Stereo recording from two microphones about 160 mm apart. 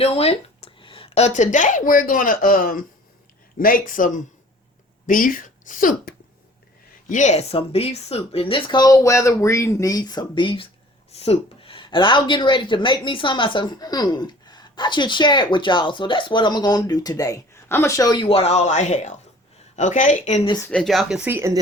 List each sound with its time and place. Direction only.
0.0 s a woman's voice: 40° left (ahead or behind)
20.7 s speech: 5° left (ahead or behind); by 21.6 s 15° right (ahead or behind)